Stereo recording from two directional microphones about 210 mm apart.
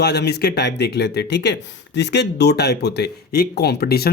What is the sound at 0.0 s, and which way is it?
Speech, 50° left (ahead or behind).